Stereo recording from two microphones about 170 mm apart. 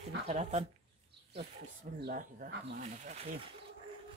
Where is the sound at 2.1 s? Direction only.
55° right (ahead or behind).